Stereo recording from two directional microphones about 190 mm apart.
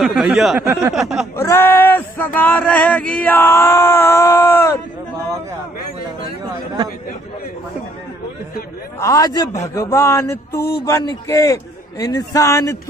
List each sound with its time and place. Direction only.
0.0 s speech: 5° right (ahead or behind)
1.3 s male singing: 15° left (ahead or behind)
9.0 s male singing: 20° left (ahead or behind)